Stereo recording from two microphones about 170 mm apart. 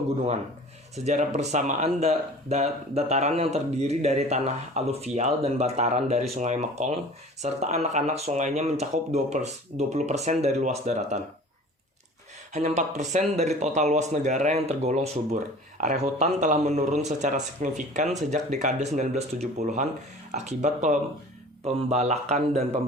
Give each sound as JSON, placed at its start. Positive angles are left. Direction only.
{"t": 0.9, "sound": "speech", "side_deg": -45}
{"t": 12.5, "sound": "speech", "side_deg": -45}